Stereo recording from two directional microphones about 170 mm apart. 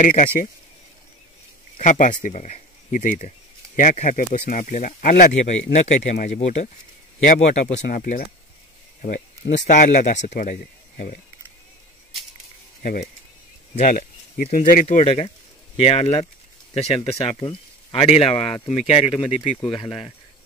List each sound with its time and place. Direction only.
0.0 s speech: 50° left (ahead or behind)
1.8 s speech: 50° left (ahead or behind)
12.8 s speech: 55° left (ahead or behind)
13.7 s speech: 45° left (ahead or behind)
14.3 s speech: 55° left (ahead or behind); by 20.1 s 30° left (ahead or behind)